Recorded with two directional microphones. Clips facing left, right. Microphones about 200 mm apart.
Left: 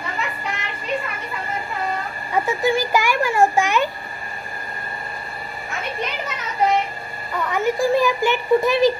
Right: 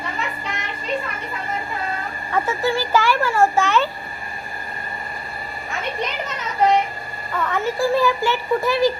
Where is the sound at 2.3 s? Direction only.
15° left (ahead or behind).